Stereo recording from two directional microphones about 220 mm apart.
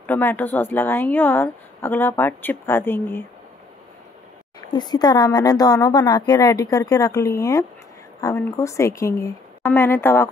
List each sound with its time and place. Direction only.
0.0 s speech: 10° left (ahead or behind)
4.6 s speech: 20° left (ahead or behind)